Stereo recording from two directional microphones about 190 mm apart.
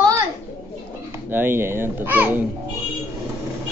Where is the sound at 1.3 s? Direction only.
10° right (ahead or behind).